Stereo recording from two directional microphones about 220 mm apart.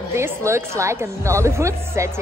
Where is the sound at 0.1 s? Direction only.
10° right (ahead or behind).